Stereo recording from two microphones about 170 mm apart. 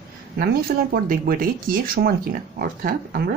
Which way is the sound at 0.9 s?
55° right (ahead or behind).